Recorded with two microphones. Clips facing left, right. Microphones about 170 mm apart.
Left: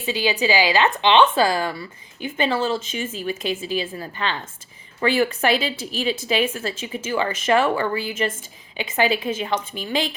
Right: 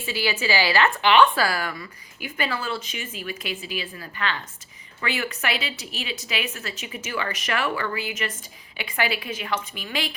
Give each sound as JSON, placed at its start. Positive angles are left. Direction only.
{"t": 0.0, "sound": "a woman's voice", "side_deg": 20}